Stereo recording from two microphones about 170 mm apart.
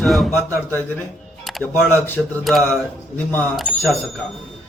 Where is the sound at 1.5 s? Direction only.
Centre (ahead or behind).